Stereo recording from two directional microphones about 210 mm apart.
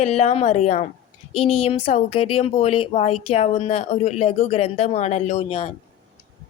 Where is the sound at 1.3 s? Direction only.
90° left.